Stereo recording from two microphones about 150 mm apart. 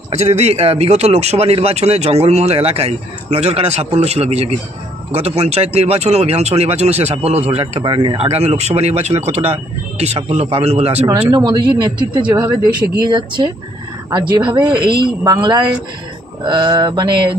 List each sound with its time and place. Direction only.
0.1 s a man's voice: 45° right (ahead or behind)
8.3 s a man's voice: 45° right (ahead or behind)
11.1 s speech: 20° right (ahead or behind)
14.4 s a woman's voice: 30° right (ahead or behind)